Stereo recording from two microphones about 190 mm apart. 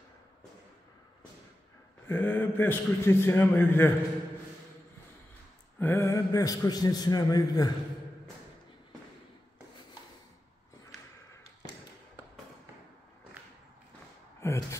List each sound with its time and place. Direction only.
2.0 s a man's voice: 10° left (ahead or behind)
5.8 s a man's voice: 15° left (ahead or behind)
14.4 s sigh: 15° left (ahead or behind)